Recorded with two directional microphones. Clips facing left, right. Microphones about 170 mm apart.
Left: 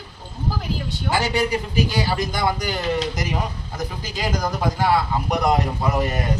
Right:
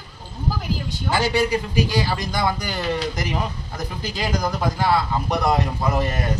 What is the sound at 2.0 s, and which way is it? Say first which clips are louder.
A man's voice: left 1 dB; 15° left (ahead or behind).